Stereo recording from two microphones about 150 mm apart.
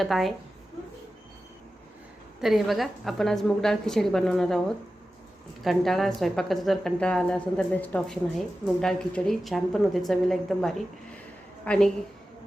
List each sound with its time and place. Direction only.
0.0 s a woman's voice: centre (ahead or behind)
2.4 s a woman's voice: centre (ahead or behind)
5.6 s a woman's voice: centre (ahead or behind)